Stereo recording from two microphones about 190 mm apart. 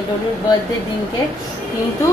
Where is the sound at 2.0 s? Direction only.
15° left (ahead or behind).